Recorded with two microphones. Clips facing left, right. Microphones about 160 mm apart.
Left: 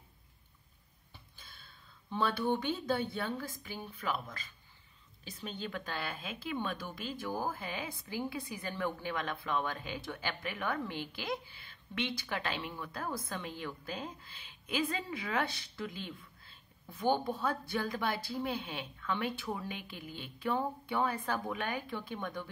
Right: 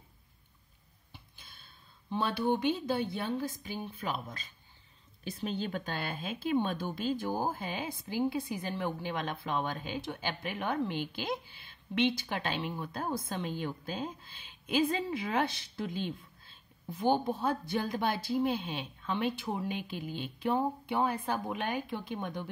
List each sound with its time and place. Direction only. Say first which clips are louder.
2.0 s a woman's voice: right 2 dB; 15° right (ahead or behind)
5.3 s a woman's voice: right 6 dB; 35° right (ahead or behind); by 22.5 s 15° right (ahead or behind)